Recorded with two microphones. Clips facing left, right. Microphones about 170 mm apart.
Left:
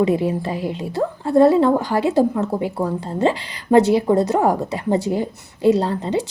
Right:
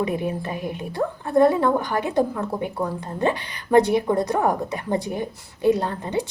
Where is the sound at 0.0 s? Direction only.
25° left (ahead or behind).